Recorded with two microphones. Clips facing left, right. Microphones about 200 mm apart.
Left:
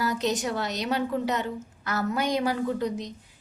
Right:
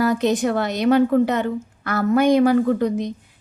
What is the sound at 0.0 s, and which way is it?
A woman's voice, 55° right (ahead or behind).